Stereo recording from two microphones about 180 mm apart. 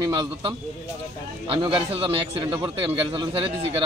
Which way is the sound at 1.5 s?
30° right (ahead or behind).